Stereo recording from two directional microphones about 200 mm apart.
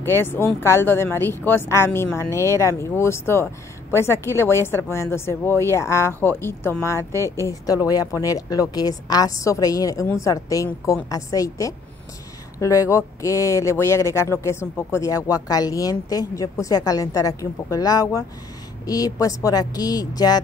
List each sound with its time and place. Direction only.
0.0 s a woman's voice: 10° left (ahead or behind)